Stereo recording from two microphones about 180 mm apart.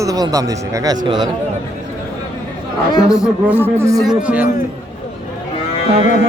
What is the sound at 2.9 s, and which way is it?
Speech, 20° left (ahead or behind).